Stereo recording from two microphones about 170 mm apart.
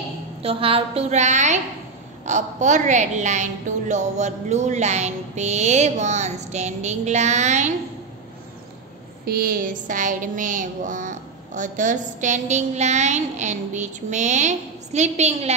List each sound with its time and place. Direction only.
0.4 s a woman's voice: 35° right (ahead or behind)
9.2 s a child's voice: 60° right (ahead or behind); by 15.5 s 40° right (ahead or behind)